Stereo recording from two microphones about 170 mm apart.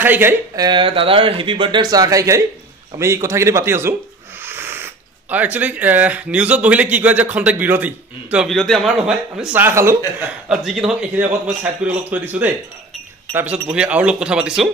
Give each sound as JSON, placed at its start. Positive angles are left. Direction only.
{"t": 0.0, "sound": "speech", "side_deg": -10}
{"t": 0.7, "sound": "speech", "side_deg": -30}
{"t": 8.5, "sound": "a man's voice", "side_deg": 0}
{"t": 10.5, "sound": "a man's voice", "side_deg": 0}